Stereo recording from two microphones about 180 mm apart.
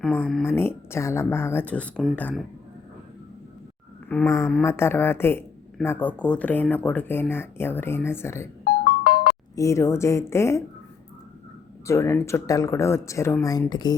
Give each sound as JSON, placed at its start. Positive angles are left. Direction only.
{"t": 0.0, "sound": "speech", "side_deg": 5}
{"t": 4.1, "sound": "speech", "side_deg": 15}
{"t": 8.8, "sound": "music", "side_deg": 55}
{"t": 9.6, "sound": "speech", "side_deg": 15}
{"t": 11.9, "sound": "speech", "side_deg": 15}